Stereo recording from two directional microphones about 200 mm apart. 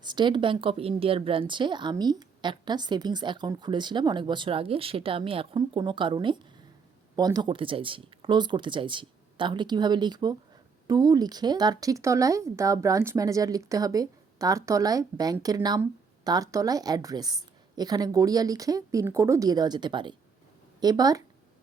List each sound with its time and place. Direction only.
0.0 s speech: 20° right (ahead or behind)